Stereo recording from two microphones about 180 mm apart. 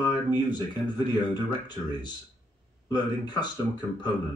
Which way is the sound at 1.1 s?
25° left (ahead or behind).